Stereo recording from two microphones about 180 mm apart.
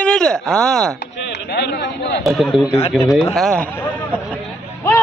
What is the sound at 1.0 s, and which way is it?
Speech, 70° left (ahead or behind).